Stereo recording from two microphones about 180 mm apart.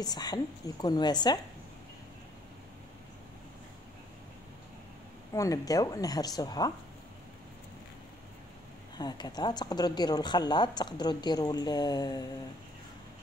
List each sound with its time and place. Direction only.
0.0 s speech: 20° left (ahead or behind)
5.3 s speech: 20° left (ahead or behind)
8.9 s speech: 25° left (ahead or behind)